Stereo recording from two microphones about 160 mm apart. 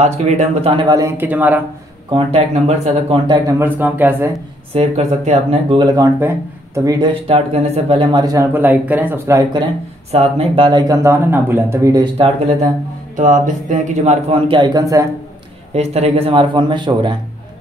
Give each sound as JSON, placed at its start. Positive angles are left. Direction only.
{"t": 0.0, "sound": "speech", "side_deg": -45}
{"t": 0.8, "sound": "speech", "side_deg": -20}
{"t": 2.1, "sound": "speech", "side_deg": -40}
{"t": 3.3, "sound": "speech", "side_deg": -25}
{"t": 4.7, "sound": "speech", "side_deg": -45}
{"t": 6.1, "sound": "speech", "side_deg": -15}
{"t": 10.1, "sound": "speech", "side_deg": -40}
{"t": 13.1, "sound": "speech", "side_deg": -50}
{"t": 14.5, "sound": "speech", "side_deg": -25}
{"t": 15.7, "sound": "speech", "side_deg": -40}